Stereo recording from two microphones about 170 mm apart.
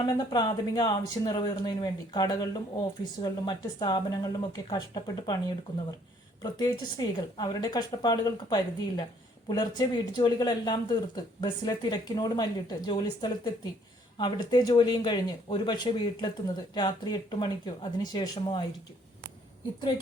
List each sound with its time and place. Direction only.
0.0 s speech: 25° left (ahead or behind)